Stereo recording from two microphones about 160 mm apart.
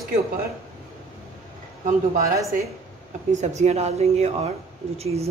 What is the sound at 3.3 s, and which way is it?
Speech, 45° right (ahead or behind).